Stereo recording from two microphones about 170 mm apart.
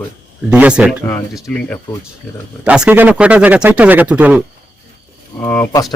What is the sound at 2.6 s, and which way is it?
A man's voice, 5° right (ahead or behind).